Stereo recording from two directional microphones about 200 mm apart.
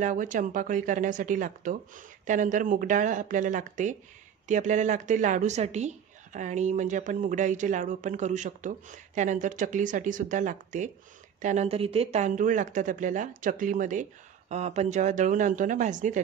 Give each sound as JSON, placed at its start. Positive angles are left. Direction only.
{"t": 0.0, "sound": "a woman's voice", "side_deg": -40}